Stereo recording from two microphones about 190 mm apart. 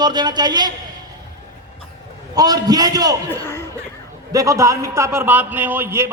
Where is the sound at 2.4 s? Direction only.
20° right (ahead or behind).